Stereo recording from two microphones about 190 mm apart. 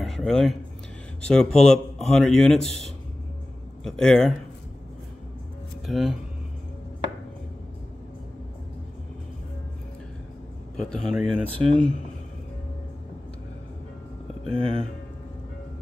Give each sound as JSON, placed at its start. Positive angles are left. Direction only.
{"t": 0.0, "sound": "a sound", "side_deg": 0}
{"t": 1.2, "sound": "a man's voice", "side_deg": 5}
{"t": 3.8, "sound": "a man's voice", "side_deg": 0}
{"t": 5.9, "sound": "speech", "side_deg": 0}
{"t": 10.8, "sound": "a man's voice", "side_deg": 5}
{"t": 14.6, "sound": "speech", "side_deg": -30}